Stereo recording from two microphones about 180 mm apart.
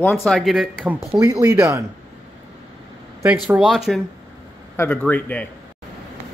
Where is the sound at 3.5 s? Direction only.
5° right (ahead or behind).